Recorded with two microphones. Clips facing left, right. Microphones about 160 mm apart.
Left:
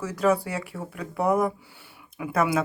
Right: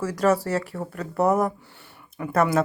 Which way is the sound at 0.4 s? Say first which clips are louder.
Right 6 dB; centre (ahead or behind).